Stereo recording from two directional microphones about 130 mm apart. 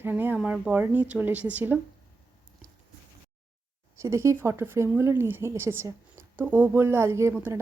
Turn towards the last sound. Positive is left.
turn(degrees=-20)  # may be behind; listen again after turning